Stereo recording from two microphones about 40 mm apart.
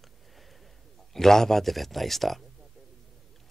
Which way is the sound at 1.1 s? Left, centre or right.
Centre.